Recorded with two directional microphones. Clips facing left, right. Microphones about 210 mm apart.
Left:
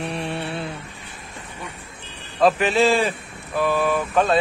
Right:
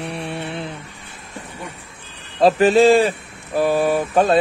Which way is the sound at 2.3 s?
35° right (ahead or behind).